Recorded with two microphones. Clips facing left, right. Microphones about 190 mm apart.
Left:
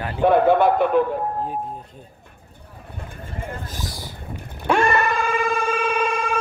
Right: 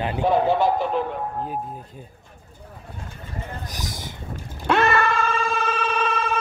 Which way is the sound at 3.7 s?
20° right (ahead or behind).